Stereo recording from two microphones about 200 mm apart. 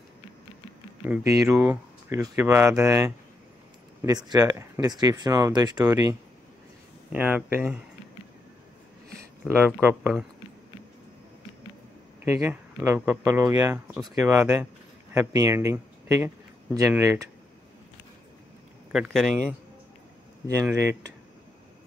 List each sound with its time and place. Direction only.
1.0 s speech: 10° right (ahead or behind)
9.8 s speech: 10° right (ahead or behind)
12.3 s speech: 15° right (ahead or behind)
18.9 s speech: 5° right (ahead or behind)